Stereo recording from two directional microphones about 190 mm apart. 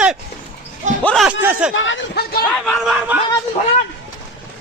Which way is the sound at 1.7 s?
80° left.